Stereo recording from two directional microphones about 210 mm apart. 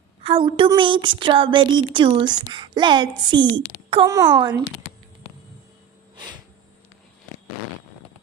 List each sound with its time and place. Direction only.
0.2 s a woman's voice: 25° right (ahead or behind)